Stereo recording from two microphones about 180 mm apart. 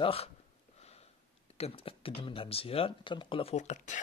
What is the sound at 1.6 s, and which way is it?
Speech, 35° left (ahead or behind).